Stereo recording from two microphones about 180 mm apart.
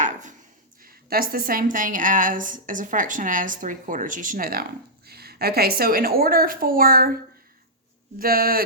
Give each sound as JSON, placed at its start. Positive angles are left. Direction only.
{"t": 0.0, "sound": "a sound", "side_deg": -45}
{"t": 0.8, "sound": "a woman's voice", "side_deg": -55}
{"t": 8.2, "sound": "a woman's voice", "side_deg": -55}